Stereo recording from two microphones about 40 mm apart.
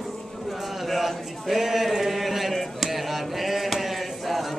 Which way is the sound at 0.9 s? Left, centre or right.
Centre.